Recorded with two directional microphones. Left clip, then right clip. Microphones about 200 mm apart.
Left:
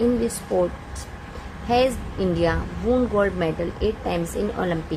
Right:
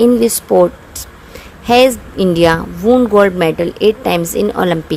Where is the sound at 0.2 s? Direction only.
45° right (ahead or behind).